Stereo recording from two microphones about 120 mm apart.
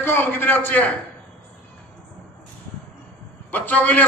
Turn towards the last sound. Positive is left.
turn(degrees=15)  # may be behind; listen again after turning